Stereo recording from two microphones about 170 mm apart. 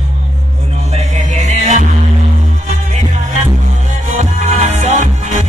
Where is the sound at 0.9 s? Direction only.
45° right (ahead or behind).